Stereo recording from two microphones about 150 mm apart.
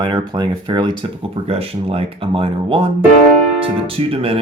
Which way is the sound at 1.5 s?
40° right (ahead or behind).